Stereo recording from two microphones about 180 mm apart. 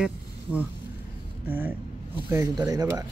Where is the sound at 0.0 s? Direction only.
10° right (ahead or behind).